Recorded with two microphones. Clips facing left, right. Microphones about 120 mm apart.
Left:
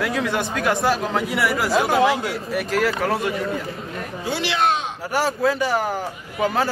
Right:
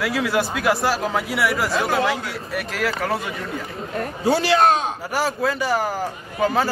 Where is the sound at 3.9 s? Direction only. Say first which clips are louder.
Right 8 dB; 40° right (ahead or behind).